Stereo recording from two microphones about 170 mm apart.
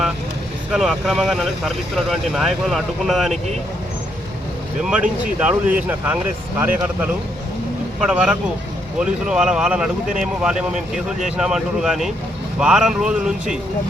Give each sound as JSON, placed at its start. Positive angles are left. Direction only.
{"t": 0.7, "sound": "speech", "side_deg": 0}
{"t": 4.8, "sound": "speech", "side_deg": -5}